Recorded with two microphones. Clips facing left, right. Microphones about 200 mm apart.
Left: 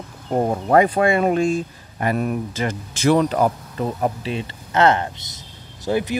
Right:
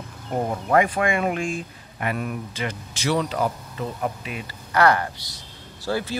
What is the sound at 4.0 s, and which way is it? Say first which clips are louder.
Speech: left 6 dB; 30° left (ahead or behind).